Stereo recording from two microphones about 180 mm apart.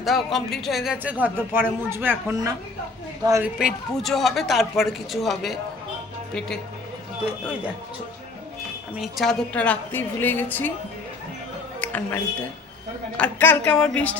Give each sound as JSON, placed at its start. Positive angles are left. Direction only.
{"t": 0.0, "sound": "speech", "side_deg": 0}
{"t": 1.2, "sound": "speech", "side_deg": -10}
{"t": 3.6, "sound": "speech", "side_deg": 0}
{"t": 9.0, "sound": "a woman's voice", "side_deg": 0}
{"t": 11.8, "sound": "music", "side_deg": 10}
{"t": 13.1, "sound": "a woman's voice", "side_deg": 10}